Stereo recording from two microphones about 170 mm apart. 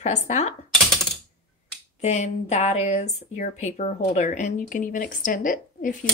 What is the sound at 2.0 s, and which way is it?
Speech, 40° left (ahead or behind).